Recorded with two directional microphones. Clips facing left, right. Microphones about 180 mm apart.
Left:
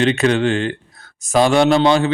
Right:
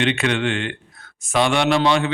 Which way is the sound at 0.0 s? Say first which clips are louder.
Left 5 dB; 35° left (ahead or behind).